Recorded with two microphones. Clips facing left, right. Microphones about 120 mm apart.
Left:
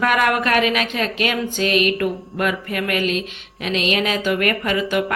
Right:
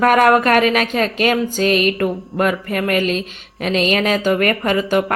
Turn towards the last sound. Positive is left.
turn(degrees=-40)  # may be behind; listen again after turning